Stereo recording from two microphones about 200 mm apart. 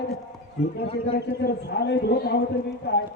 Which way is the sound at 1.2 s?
55° left (ahead or behind).